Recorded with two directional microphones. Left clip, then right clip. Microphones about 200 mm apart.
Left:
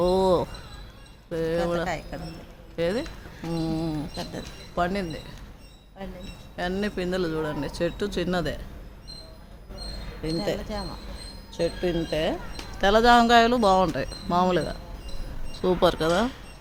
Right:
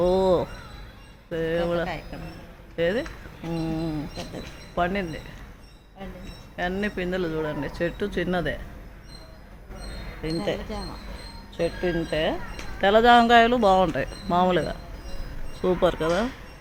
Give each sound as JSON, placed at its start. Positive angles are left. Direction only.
{"t": 0.0, "sound": "a sound", "side_deg": 10}
{"t": 1.3, "sound": "speech", "side_deg": 10}
{"t": 2.1, "sound": "a man's voice", "side_deg": 50}
{"t": 2.7, "sound": "speech", "side_deg": 10}
{"t": 6.6, "sound": "speech", "side_deg": 15}
{"t": 10.2, "sound": "speech", "side_deg": 5}